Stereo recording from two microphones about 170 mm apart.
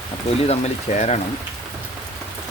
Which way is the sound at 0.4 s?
40° left (ahead or behind).